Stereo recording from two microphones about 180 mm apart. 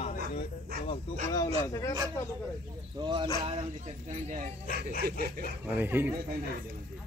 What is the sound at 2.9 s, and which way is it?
Speech, 25° right (ahead or behind).